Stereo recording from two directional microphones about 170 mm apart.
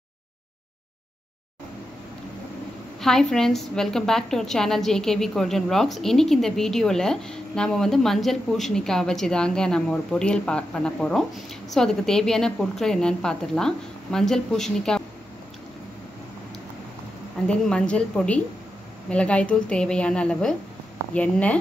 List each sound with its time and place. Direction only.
3.0 s a woman's voice: 5° left (ahead or behind)
17.5 s speech: 5° left (ahead or behind)